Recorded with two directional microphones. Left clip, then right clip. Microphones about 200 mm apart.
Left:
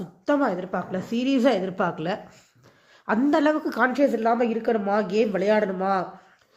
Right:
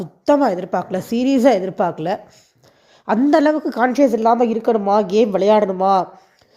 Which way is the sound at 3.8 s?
35° right (ahead or behind).